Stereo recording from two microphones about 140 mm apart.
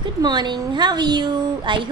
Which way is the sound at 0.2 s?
30° right (ahead or behind).